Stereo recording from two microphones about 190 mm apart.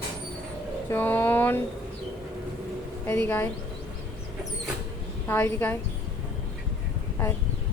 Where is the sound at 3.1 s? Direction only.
10° left (ahead or behind).